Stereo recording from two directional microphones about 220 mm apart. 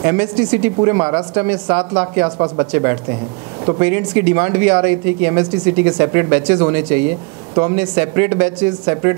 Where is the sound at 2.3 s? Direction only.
20° right (ahead or behind).